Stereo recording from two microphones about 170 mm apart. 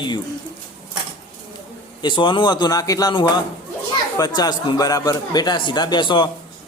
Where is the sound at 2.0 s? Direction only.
25° left (ahead or behind).